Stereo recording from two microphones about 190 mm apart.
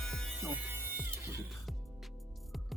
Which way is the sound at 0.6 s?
10° right (ahead or behind).